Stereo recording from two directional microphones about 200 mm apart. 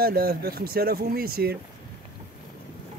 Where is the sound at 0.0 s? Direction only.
50° right (ahead or behind).